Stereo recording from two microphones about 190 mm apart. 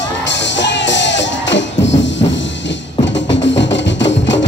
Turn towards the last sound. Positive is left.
turn(degrees=70)  # may be behind; listen again after turning